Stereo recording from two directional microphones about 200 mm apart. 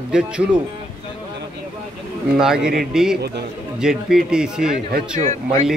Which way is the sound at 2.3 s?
5° right (ahead or behind).